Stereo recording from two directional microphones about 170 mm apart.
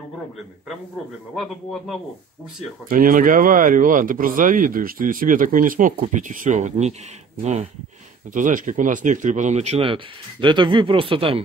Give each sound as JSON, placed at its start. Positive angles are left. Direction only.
{"t": 1.3, "sound": "speech", "side_deg": 0}
{"t": 2.9, "sound": "speech", "side_deg": -55}
{"t": 8.3, "sound": "speech", "side_deg": -50}